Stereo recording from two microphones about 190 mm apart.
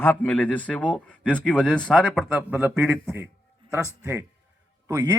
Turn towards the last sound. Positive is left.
turn(degrees=-15)  # may be behind; listen again after turning